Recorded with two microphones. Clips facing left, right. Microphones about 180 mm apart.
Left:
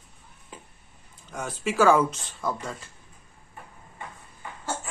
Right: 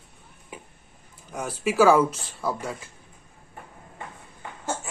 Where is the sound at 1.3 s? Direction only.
10° right (ahead or behind).